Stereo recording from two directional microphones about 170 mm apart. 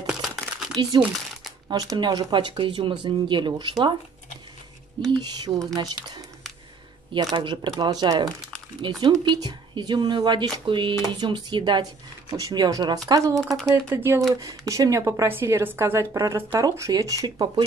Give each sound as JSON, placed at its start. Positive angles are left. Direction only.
{"t": 0.0, "sound": "a sound", "side_deg": 0}
{"t": 0.9, "sound": "speech", "side_deg": -25}
{"t": 5.1, "sound": "speech", "side_deg": -25}
{"t": 7.3, "sound": "a woman's voice", "side_deg": -30}